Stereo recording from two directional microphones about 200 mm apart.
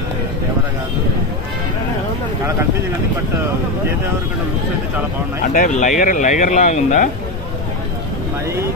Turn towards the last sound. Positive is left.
turn(degrees=40)  # may be behind; listen again after turning